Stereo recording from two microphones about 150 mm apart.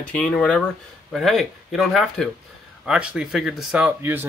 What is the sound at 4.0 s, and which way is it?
Speech, 15° right (ahead or behind).